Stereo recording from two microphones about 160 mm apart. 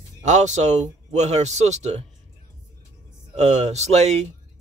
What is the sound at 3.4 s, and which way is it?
Speech, 45° right (ahead or behind).